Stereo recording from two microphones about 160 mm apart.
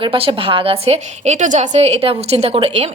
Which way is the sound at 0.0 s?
35° right (ahead or behind).